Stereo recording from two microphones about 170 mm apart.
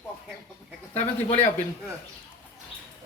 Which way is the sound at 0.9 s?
40° left (ahead or behind).